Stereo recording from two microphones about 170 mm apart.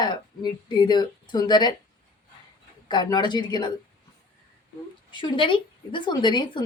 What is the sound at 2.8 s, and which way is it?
Speech, 25° left (ahead or behind).